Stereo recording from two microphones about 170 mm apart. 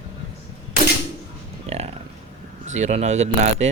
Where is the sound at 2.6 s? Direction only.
40° right (ahead or behind).